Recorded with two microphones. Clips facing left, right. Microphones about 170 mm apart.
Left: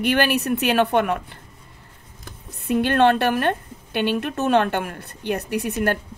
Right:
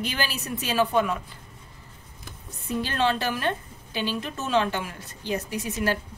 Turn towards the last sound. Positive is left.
turn(degrees=60)  # may be behind; listen again after turning